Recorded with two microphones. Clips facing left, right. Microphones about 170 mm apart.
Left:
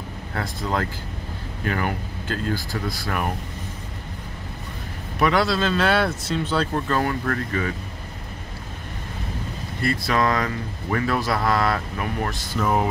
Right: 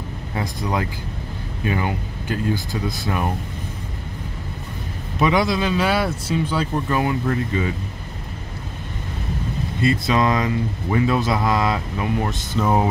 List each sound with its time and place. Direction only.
0.3 s speech: 15° right (ahead or behind)
5.2 s speech: 15° right (ahead or behind)
9.8 s speech: 20° right (ahead or behind)